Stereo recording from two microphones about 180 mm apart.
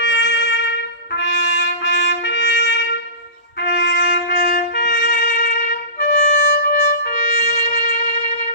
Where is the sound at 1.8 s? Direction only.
85° left.